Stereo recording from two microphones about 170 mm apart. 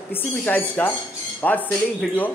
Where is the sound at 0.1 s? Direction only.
10° left (ahead or behind).